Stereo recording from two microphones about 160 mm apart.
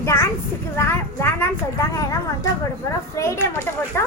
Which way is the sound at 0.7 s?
15° left (ahead or behind).